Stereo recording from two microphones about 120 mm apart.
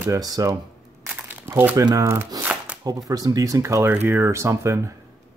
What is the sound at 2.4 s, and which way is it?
Shuffling cards, 10° right (ahead or behind).